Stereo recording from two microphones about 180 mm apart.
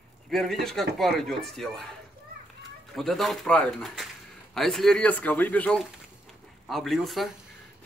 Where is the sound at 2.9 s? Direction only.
Centre (ahead or behind).